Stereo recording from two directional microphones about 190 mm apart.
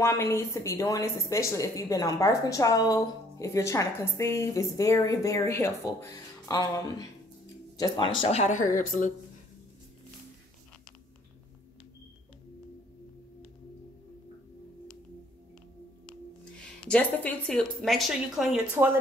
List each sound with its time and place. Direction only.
0.0 s a woman's voice: 15° left (ahead or behind); by 9.1 s 45° left (ahead or behind)
16.8 s speech: 5° left (ahead or behind)